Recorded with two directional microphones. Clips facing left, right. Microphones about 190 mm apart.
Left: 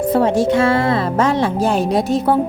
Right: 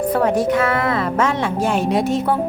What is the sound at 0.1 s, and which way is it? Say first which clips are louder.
A woman's voice: left 3 dB; 25° left (ahead or behind).